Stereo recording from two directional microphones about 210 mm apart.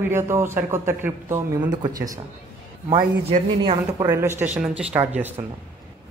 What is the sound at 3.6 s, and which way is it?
A man's voice, 20° right (ahead or behind).